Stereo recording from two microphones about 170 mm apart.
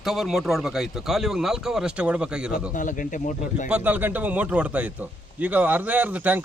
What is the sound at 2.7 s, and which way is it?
Speech, 50° left (ahead or behind).